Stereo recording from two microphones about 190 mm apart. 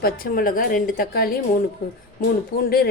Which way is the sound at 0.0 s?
50° left (ahead or behind).